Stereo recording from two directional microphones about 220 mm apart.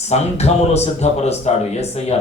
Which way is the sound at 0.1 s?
30° left (ahead or behind).